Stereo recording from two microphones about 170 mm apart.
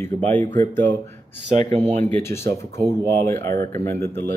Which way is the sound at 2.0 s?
15° left (ahead or behind).